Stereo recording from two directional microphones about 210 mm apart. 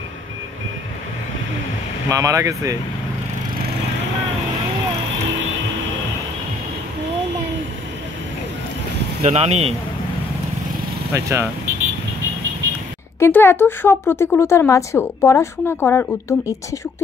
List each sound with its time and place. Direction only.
2.0 s speech: 15° right (ahead or behind)
9.2 s speech: 30° right (ahead or behind)
11.1 s speech: 15° right (ahead or behind)
13.2 s a woman's voice: 10° left (ahead or behind)